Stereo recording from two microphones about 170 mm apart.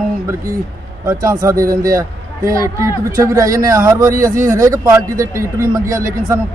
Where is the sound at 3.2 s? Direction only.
20° right (ahead or behind).